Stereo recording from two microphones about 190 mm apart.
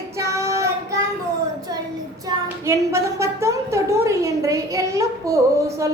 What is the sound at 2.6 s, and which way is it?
A woman's voice, 15° right (ahead or behind).